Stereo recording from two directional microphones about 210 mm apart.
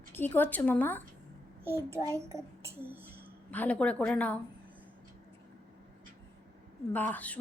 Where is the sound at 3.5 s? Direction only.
5° left (ahead or behind).